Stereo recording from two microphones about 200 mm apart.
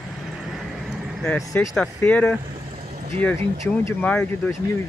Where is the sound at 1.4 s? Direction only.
15° left (ahead or behind).